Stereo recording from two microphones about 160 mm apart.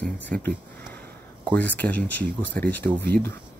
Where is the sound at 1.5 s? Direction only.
10° left (ahead or behind).